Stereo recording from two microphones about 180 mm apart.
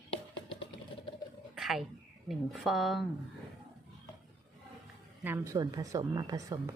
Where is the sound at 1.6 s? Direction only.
Centre (ahead or behind).